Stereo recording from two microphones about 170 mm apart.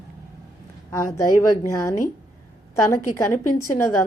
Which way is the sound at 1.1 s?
20° left (ahead or behind).